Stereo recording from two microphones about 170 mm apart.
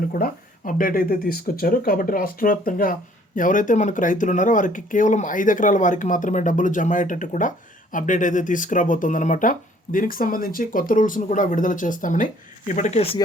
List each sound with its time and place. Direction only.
0.1 s speech: 55° left (ahead or behind)